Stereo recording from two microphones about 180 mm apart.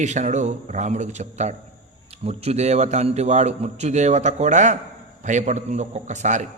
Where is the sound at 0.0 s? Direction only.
40° right (ahead or behind).